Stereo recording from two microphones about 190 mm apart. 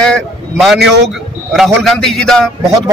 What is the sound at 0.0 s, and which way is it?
A man's voice, centre (ahead or behind).